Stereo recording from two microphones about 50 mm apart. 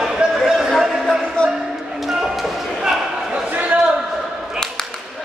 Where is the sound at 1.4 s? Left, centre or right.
Centre.